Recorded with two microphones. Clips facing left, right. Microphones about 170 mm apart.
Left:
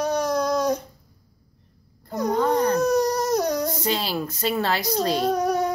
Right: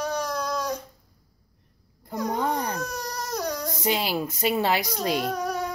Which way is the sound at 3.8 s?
15° right (ahead or behind).